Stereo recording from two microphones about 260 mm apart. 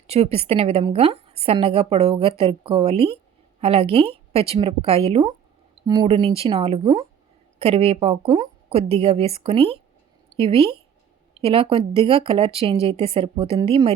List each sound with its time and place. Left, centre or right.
0.1 s a woman's voice: right